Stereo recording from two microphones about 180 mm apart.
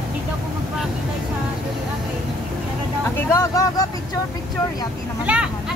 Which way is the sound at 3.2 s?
20° left (ahead or behind).